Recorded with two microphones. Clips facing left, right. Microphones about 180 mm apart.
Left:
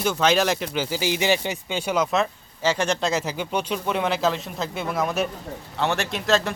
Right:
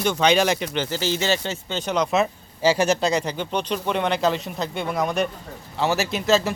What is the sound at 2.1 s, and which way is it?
A man's voice, 10° right (ahead or behind).